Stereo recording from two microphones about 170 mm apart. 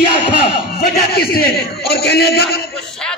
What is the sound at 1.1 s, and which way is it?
A man's voice, 65° left (ahead or behind).